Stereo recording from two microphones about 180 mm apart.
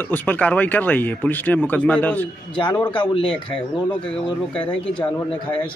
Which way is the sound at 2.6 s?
25° left (ahead or behind).